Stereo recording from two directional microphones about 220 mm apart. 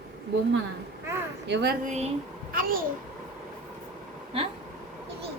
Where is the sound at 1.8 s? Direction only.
30° right (ahead or behind).